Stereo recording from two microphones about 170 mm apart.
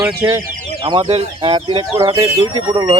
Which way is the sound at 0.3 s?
25° right (ahead or behind).